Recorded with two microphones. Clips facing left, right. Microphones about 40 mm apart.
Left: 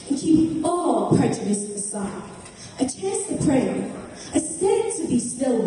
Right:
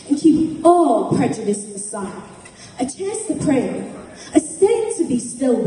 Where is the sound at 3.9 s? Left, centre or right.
Right.